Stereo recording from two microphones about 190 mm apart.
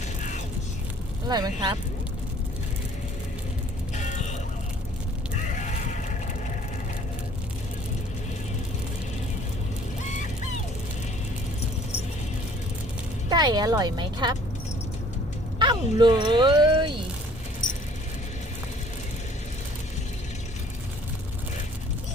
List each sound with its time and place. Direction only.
0.2 s music: 40° left (ahead or behind)
1.3 s speech: 20° right (ahead or behind)
3.9 s music: 40° left (ahead or behind)
5.5 s a sound: 40° left (ahead or behind)
13.3 s speech: 20° right (ahead or behind)
15.5 s speech: 25° right (ahead or behind)